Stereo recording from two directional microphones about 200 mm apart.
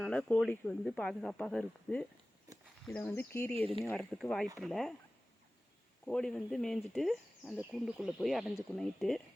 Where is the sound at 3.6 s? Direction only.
30° right (ahead or behind).